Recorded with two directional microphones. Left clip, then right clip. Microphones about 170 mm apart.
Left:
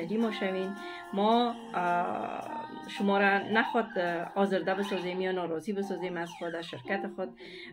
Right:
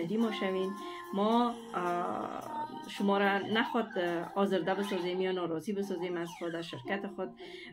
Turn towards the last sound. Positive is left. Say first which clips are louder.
# left 3 dB
turn(degrees=15)  # may be behind; listen again after turning